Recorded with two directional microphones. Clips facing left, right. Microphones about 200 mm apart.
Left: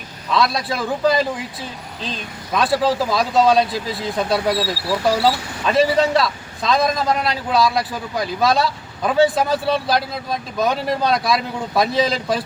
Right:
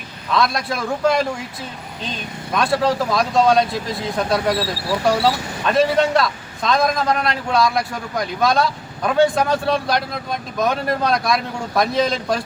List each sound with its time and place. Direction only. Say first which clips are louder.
0.3 s speech: even; centre (ahead or behind)
2.6 s speech: even; centre (ahead or behind)